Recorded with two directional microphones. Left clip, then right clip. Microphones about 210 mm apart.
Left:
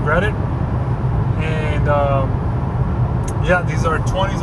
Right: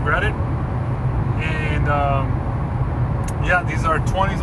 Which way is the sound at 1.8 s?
20° left (ahead or behind).